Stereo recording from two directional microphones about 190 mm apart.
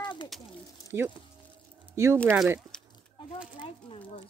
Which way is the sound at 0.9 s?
15° right (ahead or behind).